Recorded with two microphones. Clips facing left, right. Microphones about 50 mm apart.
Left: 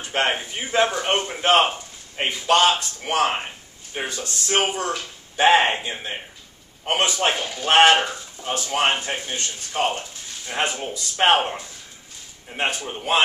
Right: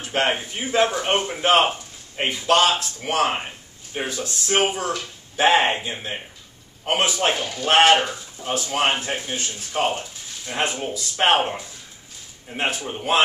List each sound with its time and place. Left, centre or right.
0.0 s a man's voice: centre